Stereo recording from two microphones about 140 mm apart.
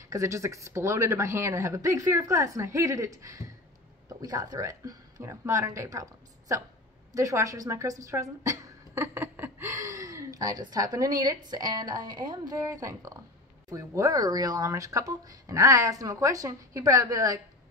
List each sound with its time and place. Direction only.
0.1 s speech: 20° right (ahead or behind)